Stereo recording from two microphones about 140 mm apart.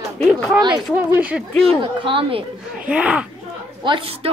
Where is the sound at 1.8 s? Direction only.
40° right (ahead or behind).